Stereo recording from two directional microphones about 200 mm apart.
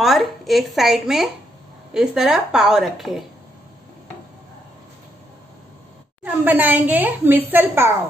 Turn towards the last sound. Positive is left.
turn(degrees=-10)  # may be behind; listen again after turning